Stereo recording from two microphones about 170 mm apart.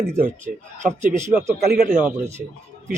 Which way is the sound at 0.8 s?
45° right (ahead or behind).